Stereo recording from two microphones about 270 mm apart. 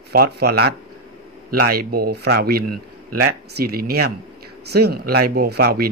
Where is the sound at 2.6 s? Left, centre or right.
Right.